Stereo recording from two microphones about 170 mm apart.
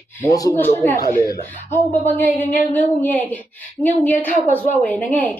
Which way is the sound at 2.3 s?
50° left (ahead or behind).